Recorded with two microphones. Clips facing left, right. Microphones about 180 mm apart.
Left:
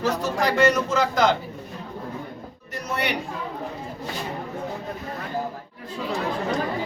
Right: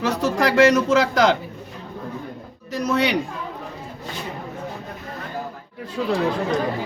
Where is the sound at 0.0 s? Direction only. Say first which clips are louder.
Right 3 dB; 90° right.